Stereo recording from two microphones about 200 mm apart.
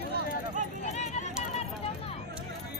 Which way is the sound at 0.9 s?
35° left (ahead or behind).